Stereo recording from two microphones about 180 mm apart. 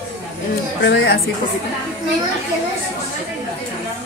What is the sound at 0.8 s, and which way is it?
Speech, 75° left (ahead or behind).